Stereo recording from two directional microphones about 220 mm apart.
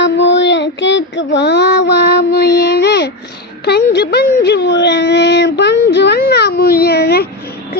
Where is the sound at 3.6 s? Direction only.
45° left (ahead or behind).